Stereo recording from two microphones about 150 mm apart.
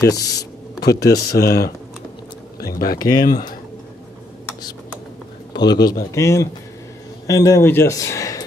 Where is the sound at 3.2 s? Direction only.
65° left (ahead or behind).